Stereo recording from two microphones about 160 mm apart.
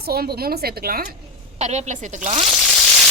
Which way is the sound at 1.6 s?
45° right (ahead or behind).